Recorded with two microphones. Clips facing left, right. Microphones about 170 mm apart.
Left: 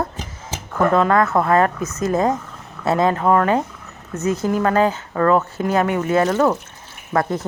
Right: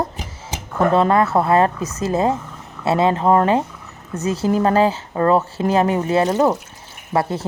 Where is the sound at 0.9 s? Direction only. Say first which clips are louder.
Right 1 dB; 30° right (ahead or behind).